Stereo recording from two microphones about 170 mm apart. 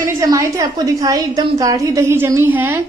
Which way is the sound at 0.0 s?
20° right (ahead or behind).